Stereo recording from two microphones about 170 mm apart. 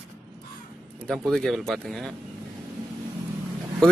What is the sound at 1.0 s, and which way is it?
A man's voice, centre (ahead or behind).